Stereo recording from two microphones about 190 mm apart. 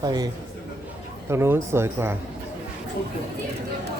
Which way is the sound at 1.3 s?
10° right (ahead or behind).